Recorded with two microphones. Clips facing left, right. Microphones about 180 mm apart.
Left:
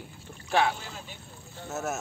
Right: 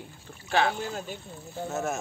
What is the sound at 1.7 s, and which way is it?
Speech, 5° left (ahead or behind).